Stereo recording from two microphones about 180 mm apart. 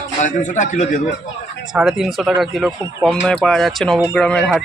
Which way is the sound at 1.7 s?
5° right (ahead or behind).